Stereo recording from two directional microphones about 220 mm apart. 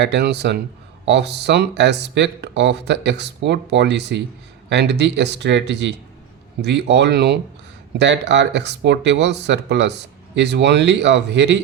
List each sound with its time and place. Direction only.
0.0 s speech: 50° right (ahead or behind)